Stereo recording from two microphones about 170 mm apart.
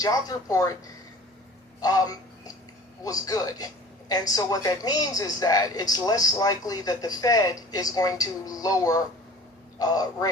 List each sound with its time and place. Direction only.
0.0 s a woman's voice: 20° left (ahead or behind)
1.8 s a sound: 20° left (ahead or behind)
3.0 s a woman's voice: 20° left (ahead or behind)